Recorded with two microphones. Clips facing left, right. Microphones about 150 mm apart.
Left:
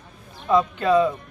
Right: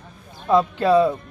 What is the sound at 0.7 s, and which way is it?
Speech, 35° right (ahead or behind).